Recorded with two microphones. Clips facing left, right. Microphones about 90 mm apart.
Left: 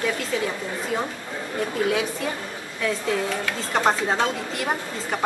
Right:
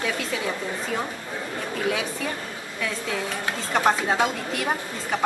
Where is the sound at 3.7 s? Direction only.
5° right (ahead or behind).